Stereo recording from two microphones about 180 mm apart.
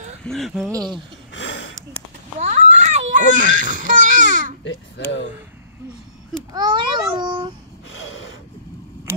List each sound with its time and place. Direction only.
0.2 s speech: centre (ahead or behind)
0.7 s speech: 20° right (ahead or behind)
1.3 s a sound: 90° left
2.4 s baby cry: 40° right (ahead or behind)
4.6 s a child's voice: 90° left
6.5 s babbling: 25° right (ahead or behind)